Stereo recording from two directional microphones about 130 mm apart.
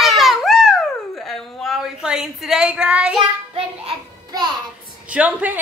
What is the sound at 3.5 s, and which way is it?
Child singing, 45° right (ahead or behind).